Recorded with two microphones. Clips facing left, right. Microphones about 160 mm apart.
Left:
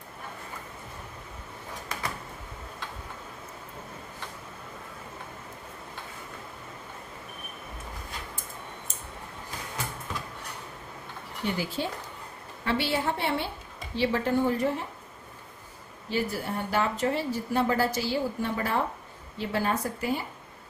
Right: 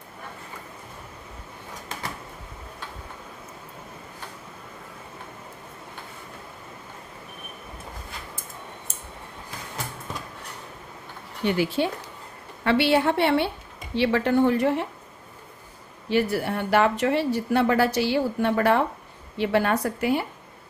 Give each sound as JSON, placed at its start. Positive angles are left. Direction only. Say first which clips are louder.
{"t": 11.4, "sound": "a woman's voice", "louder": "right 7 dB", "side_deg": -70}
{"t": 16.1, "sound": "a woman's voice", "louder": "right 6 dB", "side_deg": -70}